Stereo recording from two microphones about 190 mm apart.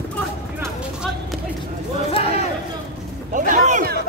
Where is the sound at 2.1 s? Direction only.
30° left (ahead or behind).